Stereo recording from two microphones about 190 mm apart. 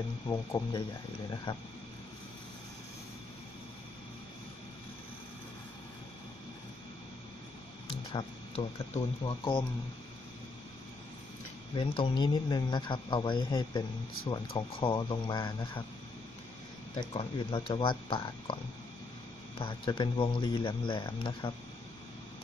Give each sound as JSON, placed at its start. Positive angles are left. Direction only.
{"t": 0.3, "sound": "speech", "side_deg": 20}
{"t": 8.1, "sound": "speech", "side_deg": 30}
{"t": 11.7, "sound": "speech", "side_deg": 25}
{"t": 17.1, "sound": "speech", "side_deg": 30}
{"t": 19.6, "sound": "speech", "side_deg": 25}